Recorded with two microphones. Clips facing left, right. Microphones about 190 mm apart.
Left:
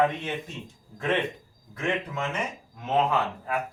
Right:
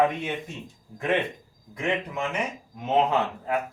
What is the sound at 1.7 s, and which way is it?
A man's voice, 15° right (ahead or behind).